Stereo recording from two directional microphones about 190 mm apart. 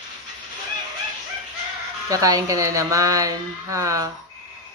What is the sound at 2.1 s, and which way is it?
Speech, 20° right (ahead or behind).